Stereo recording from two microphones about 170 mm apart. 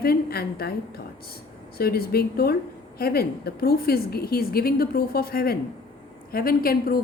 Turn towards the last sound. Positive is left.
turn(degrees=60)  # may be behind; listen again after turning